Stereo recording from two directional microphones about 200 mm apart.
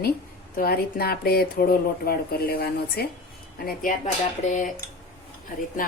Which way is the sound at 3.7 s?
40° left (ahead or behind).